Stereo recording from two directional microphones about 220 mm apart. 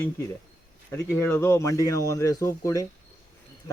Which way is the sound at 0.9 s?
10° left (ahead or behind).